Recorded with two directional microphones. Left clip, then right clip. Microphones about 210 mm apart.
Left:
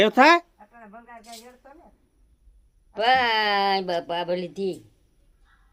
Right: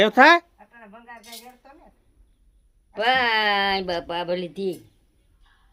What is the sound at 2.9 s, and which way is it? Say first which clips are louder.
Speech: even; centre (ahead or behind).